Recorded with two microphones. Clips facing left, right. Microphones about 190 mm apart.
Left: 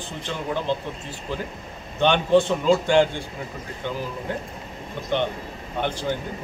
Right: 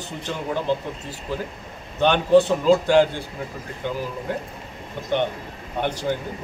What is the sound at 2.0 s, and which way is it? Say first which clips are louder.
A man's voice: right 2 dB; 5° right (ahead or behind).